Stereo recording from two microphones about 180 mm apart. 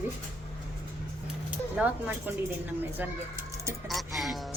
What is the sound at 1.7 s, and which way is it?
Speech, 10° right (ahead or behind).